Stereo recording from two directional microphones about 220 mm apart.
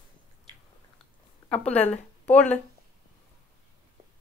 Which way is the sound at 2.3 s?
5° left (ahead or behind).